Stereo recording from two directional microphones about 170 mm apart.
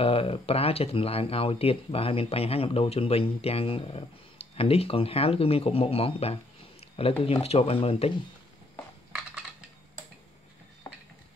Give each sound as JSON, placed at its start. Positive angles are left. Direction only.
{"t": 0.0, "sound": "speech", "side_deg": 35}